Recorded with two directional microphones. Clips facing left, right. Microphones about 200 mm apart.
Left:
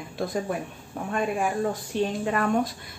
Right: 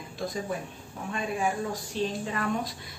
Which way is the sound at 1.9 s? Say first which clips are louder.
Left 4 dB; 55° left (ahead or behind).